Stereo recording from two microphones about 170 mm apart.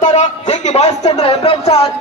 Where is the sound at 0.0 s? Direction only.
45° left (ahead or behind).